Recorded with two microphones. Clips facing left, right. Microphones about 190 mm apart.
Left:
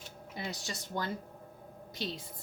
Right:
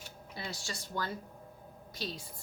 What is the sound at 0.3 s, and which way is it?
A woman's voice, 20° left (ahead or behind).